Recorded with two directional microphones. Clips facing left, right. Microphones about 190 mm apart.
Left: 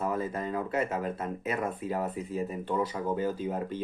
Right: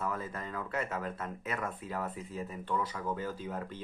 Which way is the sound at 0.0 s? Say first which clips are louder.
Left 6 dB; 20° left (ahead or behind).